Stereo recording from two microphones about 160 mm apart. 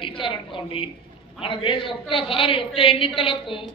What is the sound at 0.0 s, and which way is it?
A woman's voice, 30° left (ahead or behind).